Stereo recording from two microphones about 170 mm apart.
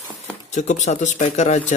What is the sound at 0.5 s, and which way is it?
Mantra, 45° left (ahead or behind).